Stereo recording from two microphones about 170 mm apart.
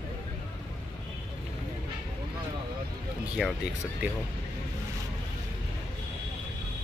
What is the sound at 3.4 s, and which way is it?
Speech, centre (ahead or behind).